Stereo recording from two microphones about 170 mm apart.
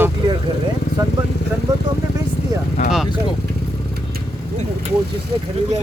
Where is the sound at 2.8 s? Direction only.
45° left (ahead or behind).